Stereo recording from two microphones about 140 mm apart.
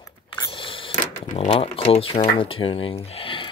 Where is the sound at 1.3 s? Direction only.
60° left (ahead or behind).